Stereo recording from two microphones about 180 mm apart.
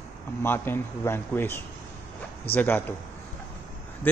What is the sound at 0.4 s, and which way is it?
Speech, 10° left (ahead or behind).